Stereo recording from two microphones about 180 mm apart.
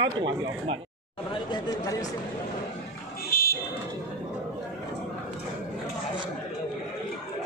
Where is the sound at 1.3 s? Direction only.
20° left (ahead or behind).